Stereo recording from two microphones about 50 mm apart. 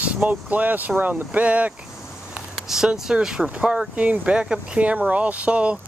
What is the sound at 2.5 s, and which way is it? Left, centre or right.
Speech, centre.